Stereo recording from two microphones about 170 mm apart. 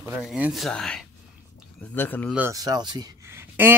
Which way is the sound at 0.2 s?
Centre (ahead or behind).